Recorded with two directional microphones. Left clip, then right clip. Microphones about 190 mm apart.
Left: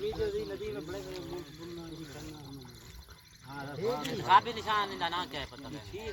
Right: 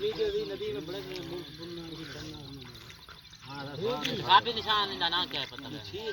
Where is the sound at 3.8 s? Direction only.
10° left (ahead or behind).